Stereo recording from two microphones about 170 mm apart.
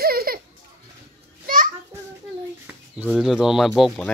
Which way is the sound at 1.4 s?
55° right (ahead or behind).